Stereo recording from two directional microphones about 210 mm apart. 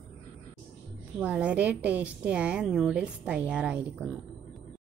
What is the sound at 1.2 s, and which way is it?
A woman's voice, 5° right (ahead or behind).